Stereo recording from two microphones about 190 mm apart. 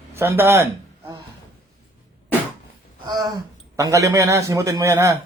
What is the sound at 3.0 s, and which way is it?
A man's voice, 20° right (ahead or behind).